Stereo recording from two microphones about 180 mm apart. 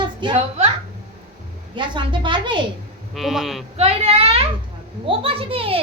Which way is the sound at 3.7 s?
35° right (ahead or behind).